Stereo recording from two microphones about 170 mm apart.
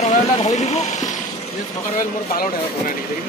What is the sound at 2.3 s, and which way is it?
Speech, 55° left (ahead or behind).